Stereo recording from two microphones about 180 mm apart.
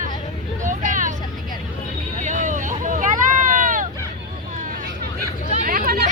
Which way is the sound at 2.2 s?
45° right (ahead or behind).